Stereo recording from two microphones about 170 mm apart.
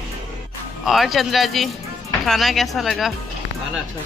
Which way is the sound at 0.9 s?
Centre (ahead or behind).